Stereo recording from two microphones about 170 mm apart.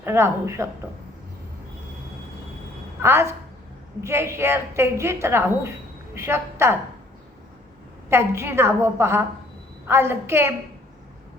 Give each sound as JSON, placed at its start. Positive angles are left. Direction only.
{"t": 0.0, "sound": "a woman's voice", "side_deg": -15}
{"t": 3.0, "sound": "a woman's voice", "side_deg": -15}
{"t": 8.1, "sound": "a woman's voice", "side_deg": -15}